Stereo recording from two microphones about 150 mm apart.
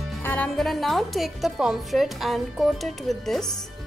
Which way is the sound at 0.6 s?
Centre (ahead or behind).